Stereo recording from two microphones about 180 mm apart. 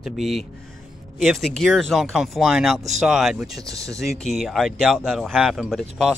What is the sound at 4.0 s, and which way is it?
Speech, centre (ahead or behind).